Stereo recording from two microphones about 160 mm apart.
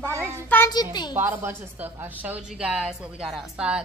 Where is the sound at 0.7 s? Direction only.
25° left (ahead or behind).